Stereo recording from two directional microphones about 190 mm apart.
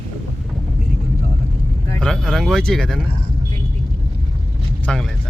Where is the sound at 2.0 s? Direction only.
5° left (ahead or behind).